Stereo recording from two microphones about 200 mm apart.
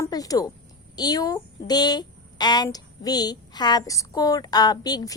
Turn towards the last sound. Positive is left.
turn(degrees=20)  # may be behind; listen again after turning